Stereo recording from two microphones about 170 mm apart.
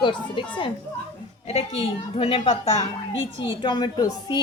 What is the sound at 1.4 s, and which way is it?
A woman's voice, 35° left (ahead or behind).